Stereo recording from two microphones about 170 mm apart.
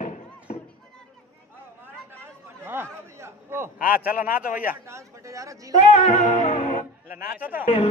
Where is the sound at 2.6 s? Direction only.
15° right (ahead or behind).